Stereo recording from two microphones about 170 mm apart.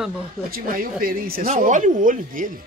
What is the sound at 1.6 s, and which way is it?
Speech, 50° right (ahead or behind).